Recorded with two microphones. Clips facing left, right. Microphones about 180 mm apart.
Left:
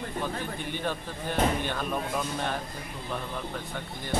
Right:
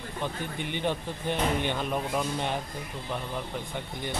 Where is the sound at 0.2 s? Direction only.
20° right (ahead or behind).